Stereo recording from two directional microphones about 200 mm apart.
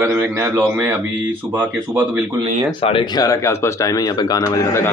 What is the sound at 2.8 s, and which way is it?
Speech, 25° left (ahead or behind).